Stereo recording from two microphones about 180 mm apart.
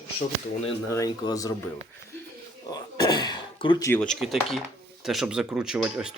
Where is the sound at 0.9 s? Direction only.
20° left (ahead or behind).